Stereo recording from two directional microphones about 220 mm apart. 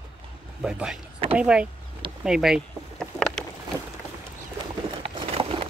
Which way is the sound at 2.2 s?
Centre (ahead or behind).